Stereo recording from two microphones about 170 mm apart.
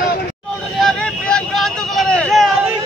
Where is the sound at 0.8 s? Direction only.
5° left (ahead or behind).